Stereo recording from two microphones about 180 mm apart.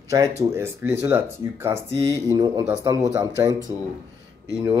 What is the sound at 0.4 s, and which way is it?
A man's voice, 15° right (ahead or behind).